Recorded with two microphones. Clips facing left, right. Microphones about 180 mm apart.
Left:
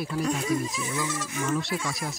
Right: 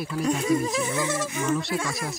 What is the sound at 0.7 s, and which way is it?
Insect, 65° right (ahead or behind).